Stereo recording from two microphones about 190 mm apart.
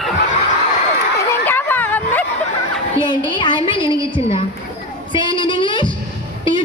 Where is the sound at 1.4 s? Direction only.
10° left (ahead or behind).